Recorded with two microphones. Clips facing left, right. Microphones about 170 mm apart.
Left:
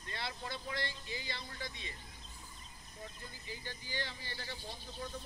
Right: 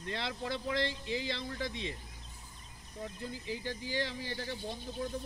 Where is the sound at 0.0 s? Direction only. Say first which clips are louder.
Right 6 dB; 85° right.